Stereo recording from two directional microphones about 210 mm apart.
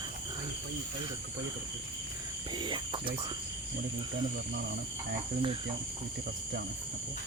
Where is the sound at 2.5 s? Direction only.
20° right (ahead or behind).